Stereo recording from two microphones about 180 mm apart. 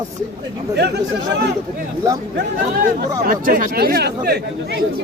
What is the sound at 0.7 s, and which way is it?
Speech, 70° right (ahead or behind).